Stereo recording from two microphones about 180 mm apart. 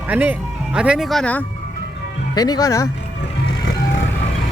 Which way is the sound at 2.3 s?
20° left (ahead or behind).